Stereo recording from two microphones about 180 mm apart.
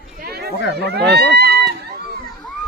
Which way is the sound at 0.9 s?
65° right (ahead or behind).